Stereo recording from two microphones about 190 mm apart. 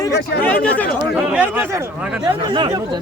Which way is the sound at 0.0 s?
10° left (ahead or behind).